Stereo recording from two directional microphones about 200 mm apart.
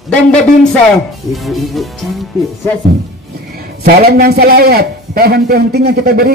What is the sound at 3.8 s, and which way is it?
A man's voice, 50° right (ahead or behind).